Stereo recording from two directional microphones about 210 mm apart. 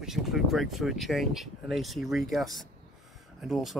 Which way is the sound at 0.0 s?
Centre (ahead or behind).